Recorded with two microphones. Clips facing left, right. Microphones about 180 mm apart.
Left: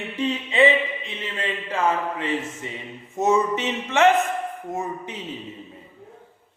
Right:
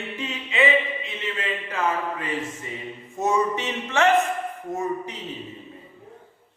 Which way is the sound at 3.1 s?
20° left (ahead or behind).